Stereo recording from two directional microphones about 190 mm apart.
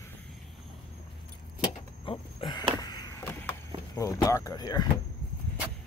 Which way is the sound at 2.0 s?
25° left (ahead or behind).